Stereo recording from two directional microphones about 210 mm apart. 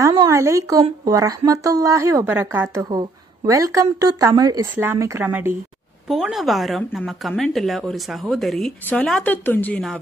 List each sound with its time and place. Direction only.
0.0 s a woman's voice: 15° right (ahead or behind); by 9.9 s 5° left (ahead or behind)